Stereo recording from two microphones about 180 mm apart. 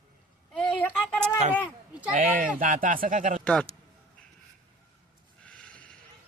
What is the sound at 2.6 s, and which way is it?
Speech, 50° right (ahead or behind).